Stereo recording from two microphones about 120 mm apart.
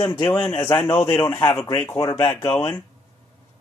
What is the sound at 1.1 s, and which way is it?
Speech, 20° left (ahead or behind).